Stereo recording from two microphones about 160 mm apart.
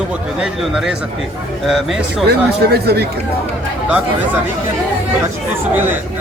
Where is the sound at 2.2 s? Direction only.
80° right.